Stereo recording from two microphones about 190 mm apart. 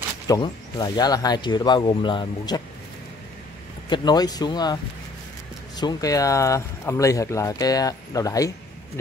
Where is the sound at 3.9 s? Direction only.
20° left (ahead or behind).